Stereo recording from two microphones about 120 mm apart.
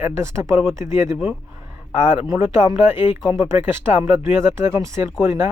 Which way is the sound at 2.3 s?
25° right (ahead or behind).